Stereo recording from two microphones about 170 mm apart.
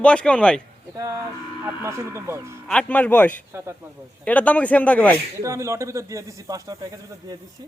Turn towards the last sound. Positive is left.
turn(degrees=-20)  # may be behind; listen again after turning